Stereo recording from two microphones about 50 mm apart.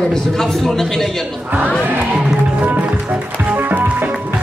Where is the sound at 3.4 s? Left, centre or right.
Right.